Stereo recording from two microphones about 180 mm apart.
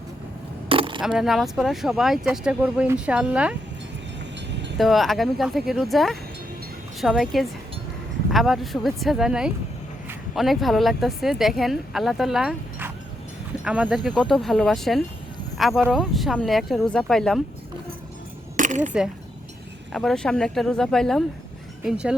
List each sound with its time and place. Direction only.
0.7 s coin: 30° right (ahead or behind)
1.0 s speech: centre (ahead or behind)
4.8 s speech: centre (ahead or behind)
18.5 s a sound: 45° right (ahead or behind)
19.9 s speech: centre (ahead or behind)